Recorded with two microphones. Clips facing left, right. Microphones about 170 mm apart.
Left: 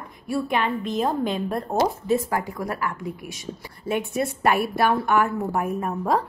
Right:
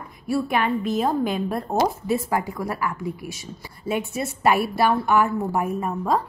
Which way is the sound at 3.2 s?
50° left (ahead or behind).